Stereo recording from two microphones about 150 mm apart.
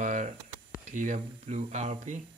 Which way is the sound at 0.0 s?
55° right (ahead or behind).